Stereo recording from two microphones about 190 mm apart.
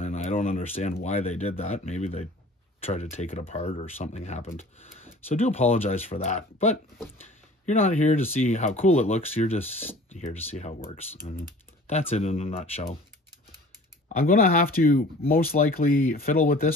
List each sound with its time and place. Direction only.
0.0 s speech: 35° left (ahead or behind)
12.1 s speech: 30° left (ahead or behind)
14.0 s speech: 45° left (ahead or behind)